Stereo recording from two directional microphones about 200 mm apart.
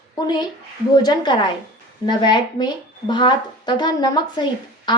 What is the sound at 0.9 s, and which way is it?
Speech, 20° left (ahead or behind).